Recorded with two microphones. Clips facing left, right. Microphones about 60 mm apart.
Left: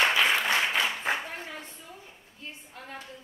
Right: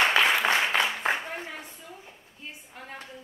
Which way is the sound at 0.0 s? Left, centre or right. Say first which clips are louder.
Right 2 dB; right.